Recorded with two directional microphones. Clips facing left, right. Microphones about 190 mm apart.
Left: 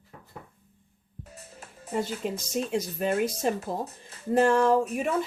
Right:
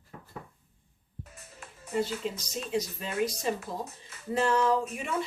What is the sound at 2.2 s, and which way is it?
Speech, 55° left (ahead or behind).